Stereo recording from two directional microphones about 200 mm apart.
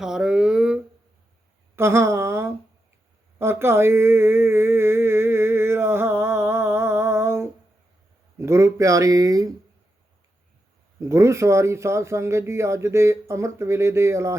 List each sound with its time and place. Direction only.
0.0 s a sound: 5° right (ahead or behind)
8.4 s speech: 15° right (ahead or behind)
11.1 s speech: 15° right (ahead or behind)